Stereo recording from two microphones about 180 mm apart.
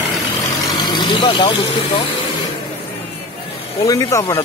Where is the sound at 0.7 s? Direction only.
25° left (ahead or behind).